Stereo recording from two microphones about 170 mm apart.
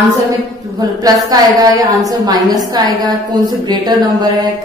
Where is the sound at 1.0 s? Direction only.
20° right (ahead or behind).